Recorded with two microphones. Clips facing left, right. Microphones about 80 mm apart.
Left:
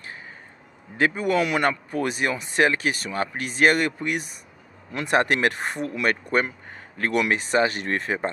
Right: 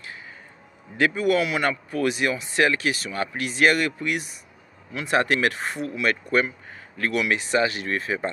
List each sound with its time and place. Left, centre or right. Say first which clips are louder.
0.9 s speech: right 1 dB; left
1.4 s speech: left 2 dB; left